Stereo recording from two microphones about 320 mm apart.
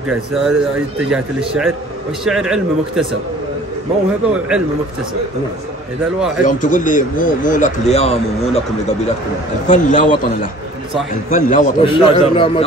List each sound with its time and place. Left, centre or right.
0.5 s speech: centre
4.3 s speech: centre
6.4 s speech: left
11.2 s a man's voice: left